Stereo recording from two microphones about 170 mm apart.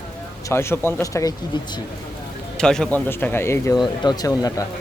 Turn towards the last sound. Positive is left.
turn(degrees=20)  # may be behind; listen again after turning